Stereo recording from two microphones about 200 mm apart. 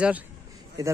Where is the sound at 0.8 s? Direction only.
20° right (ahead or behind).